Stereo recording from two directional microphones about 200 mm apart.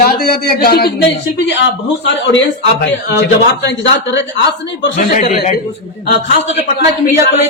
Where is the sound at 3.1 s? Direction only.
55° left (ahead or behind).